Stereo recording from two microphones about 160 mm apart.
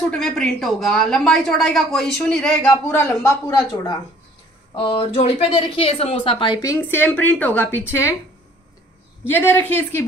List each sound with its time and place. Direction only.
0.1 s a woman's voice: 5° left (ahead or behind)
2.9 s a woman's voice: 15° left (ahead or behind); by 6.6 s 30° left (ahead or behind)
6.6 s a woman's voice: 15° left (ahead or behind)
9.2 s a woman's voice: 15° left (ahead or behind)